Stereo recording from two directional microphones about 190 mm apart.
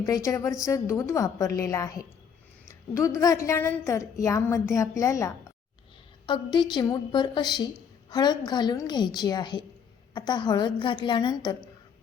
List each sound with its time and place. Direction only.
0.0 s a woman's voice: 15° left (ahead or behind)